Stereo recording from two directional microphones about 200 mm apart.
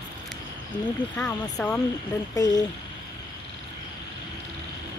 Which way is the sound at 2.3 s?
20° left (ahead or behind).